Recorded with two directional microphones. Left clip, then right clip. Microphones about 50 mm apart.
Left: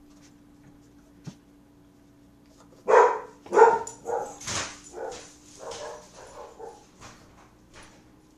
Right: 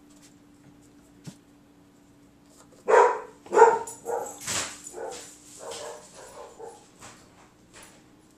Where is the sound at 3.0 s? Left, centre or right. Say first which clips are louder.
Even; left.